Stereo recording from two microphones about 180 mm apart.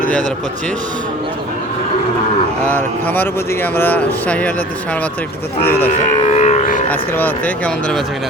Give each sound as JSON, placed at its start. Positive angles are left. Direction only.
{"t": 2.6, "sound": "speech", "side_deg": 10}
{"t": 5.6, "sound": "speech", "side_deg": 10}
{"t": 5.9, "sound": "a sound", "side_deg": 45}
{"t": 6.9, "sound": "speech", "side_deg": 10}